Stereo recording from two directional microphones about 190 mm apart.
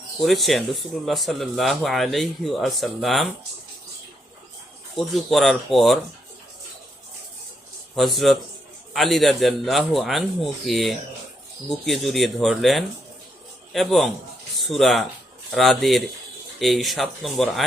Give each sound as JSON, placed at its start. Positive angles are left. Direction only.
{"t": 0.2, "sound": "speech", "side_deg": 0}
{"t": 4.9, "sound": "speech", "side_deg": 0}
{"t": 7.9, "sound": "speech", "side_deg": 0}